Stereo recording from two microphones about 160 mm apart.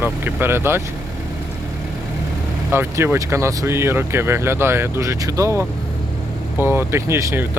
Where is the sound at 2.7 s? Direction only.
15° right (ahead or behind).